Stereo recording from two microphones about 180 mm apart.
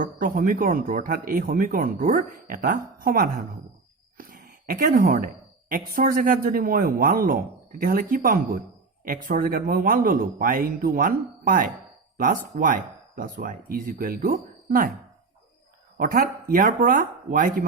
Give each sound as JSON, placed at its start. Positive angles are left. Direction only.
{"t": 0.0, "sound": "a woman's voice", "side_deg": -50}
{"t": 16.0, "sound": "speech", "side_deg": -50}